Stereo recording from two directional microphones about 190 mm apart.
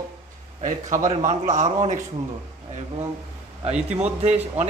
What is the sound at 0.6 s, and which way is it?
A man's voice, 40° right (ahead or behind).